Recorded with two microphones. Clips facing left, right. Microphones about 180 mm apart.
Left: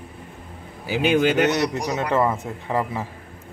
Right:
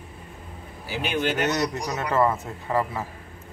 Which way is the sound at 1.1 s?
90° left.